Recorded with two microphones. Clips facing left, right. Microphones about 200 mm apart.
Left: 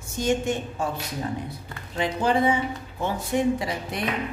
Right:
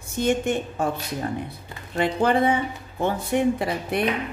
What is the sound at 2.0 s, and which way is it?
Speech, 60° right (ahead or behind).